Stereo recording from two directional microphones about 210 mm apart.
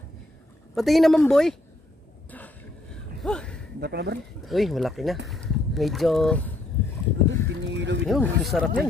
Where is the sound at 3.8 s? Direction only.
50° right (ahead or behind).